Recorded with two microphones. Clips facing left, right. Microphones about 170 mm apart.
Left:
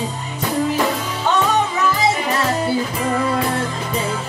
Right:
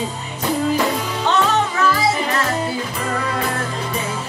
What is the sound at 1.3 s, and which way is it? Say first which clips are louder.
Music: left 1 dB; 10° left (ahead or behind).